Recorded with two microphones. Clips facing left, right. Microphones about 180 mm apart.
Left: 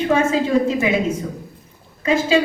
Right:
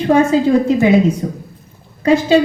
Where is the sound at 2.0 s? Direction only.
35° right (ahead or behind).